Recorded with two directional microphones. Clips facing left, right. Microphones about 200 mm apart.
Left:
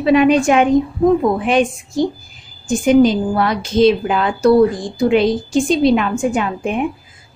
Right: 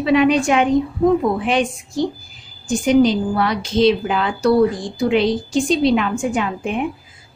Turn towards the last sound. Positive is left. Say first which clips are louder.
# left 3 dB
turn(degrees=50)  # may be behind; listen again after turning